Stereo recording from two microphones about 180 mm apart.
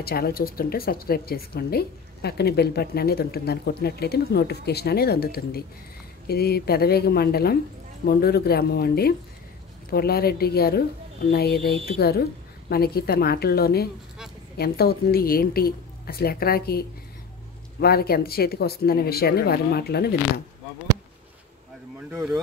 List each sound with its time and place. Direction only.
0.0 s a woman's voice: 60° left (ahead or behind)
22.1 s speech: 10° right (ahead or behind)